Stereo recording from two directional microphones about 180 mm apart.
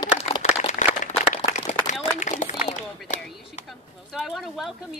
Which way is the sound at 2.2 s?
40° left (ahead or behind).